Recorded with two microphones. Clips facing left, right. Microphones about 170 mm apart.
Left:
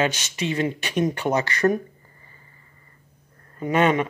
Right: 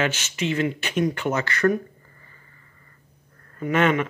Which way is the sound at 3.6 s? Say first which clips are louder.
Left 1 dB; 20° left (ahead or behind).